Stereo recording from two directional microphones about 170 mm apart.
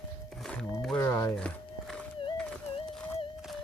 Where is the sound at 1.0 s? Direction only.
15° left (ahead or behind).